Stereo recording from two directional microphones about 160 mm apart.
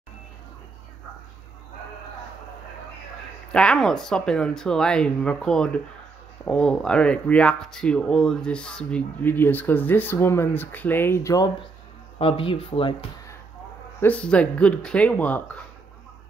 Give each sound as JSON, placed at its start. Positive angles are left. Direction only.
{"t": 3.5, "sound": "speech", "side_deg": 5}
{"t": 12.2, "sound": "speech", "side_deg": 35}
{"t": 14.0, "sound": "speech", "side_deg": 5}